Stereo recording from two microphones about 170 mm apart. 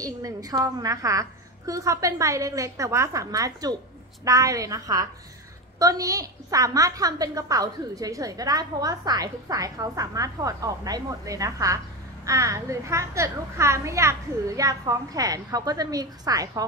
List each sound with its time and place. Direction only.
0.0 s a woman's voice: 20° right (ahead or behind)